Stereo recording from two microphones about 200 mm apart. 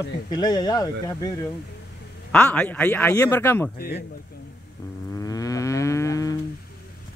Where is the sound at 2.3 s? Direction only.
5° left (ahead or behind).